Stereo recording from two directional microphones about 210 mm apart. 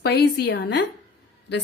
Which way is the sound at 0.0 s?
50° left (ahead or behind).